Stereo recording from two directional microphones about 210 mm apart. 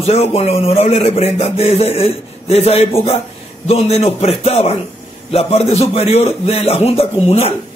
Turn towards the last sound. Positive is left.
turn(degrees=30)  # may be behind; listen again after turning